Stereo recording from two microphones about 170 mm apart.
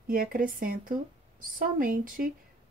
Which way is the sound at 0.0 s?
55° right (ahead or behind).